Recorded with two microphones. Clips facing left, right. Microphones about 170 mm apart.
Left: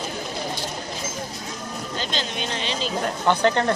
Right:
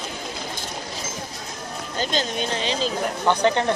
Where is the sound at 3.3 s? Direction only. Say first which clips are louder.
Even; 15° right (ahead or behind).